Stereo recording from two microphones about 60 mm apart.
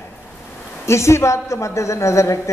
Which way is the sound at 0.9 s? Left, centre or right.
Left.